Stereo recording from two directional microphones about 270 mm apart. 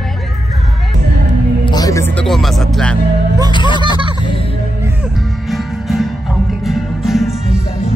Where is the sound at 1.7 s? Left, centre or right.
Centre.